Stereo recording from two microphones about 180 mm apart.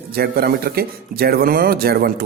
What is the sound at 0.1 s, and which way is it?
A man's voice, 60° right (ahead or behind).